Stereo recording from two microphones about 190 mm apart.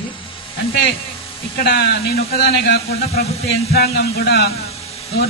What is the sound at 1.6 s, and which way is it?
A man's voice, 55° left (ahead or behind).